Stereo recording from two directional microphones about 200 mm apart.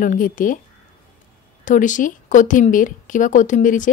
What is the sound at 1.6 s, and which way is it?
Speech, 40° left (ahead or behind).